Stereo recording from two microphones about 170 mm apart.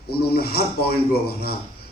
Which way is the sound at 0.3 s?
65° left (ahead or behind).